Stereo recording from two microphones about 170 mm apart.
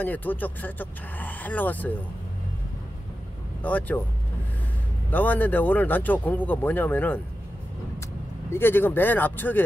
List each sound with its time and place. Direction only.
0.0 s speech: 10° left (ahead or behind)
3.6 s speech: 10° left (ahead or behind)
5.1 s speech: 10° left (ahead or behind)
8.5 s speech: 15° left (ahead or behind)